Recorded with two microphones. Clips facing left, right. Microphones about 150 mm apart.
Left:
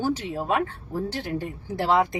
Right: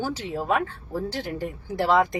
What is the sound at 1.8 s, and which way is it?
Speech, 20° left (ahead or behind).